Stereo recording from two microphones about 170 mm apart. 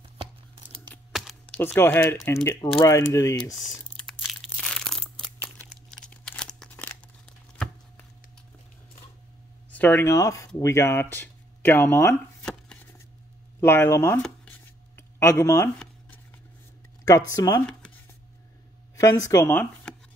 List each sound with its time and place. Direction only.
1.1 s a sound: 5° left (ahead or behind)
2.4 s speech: 20° left (ahead or behind)
4.0 s crushing: centre (ahead or behind)
5.9 s scissors: 5° left (ahead or behind)
9.7 s speech: 10° left (ahead or behind)
12.4 s a sound: 5° left (ahead or behind)
13.6 s speech: 15° left (ahead or behind)
17.0 s speech: 20° left (ahead or behind)
18.9 s speech: 20° left (ahead or behind)